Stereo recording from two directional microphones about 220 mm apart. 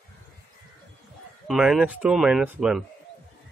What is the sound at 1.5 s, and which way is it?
Speech, 5° right (ahead or behind).